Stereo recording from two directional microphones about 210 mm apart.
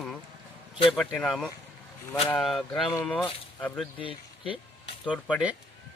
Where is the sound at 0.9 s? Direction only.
5° left (ahead or behind).